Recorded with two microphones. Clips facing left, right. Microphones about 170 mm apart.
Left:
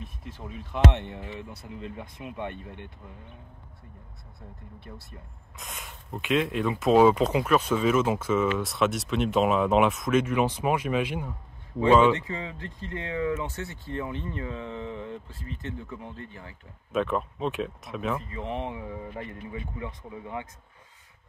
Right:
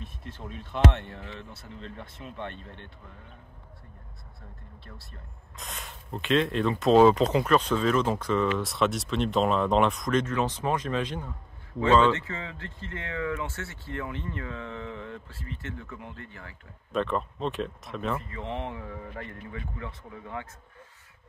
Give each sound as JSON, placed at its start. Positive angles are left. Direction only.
{"t": 0.2, "sound": "speech", "side_deg": 10}
{"t": 5.6, "sound": "speech", "side_deg": 10}
{"t": 16.9, "sound": "speech", "side_deg": 5}
{"t": 18.3, "sound": "speech", "side_deg": 15}